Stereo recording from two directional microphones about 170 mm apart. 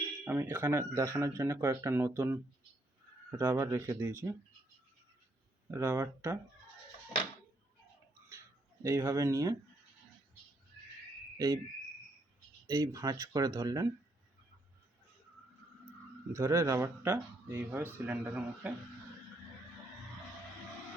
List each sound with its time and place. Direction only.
0.3 s speech: 10° right (ahead or behind)
5.7 s speech: 15° right (ahead or behind)
8.8 s speech: 15° right (ahead or behind)
11.3 s cricket: 20° right (ahead or behind)
12.6 s speech: 20° right (ahead or behind)
16.3 s speech: 15° right (ahead or behind)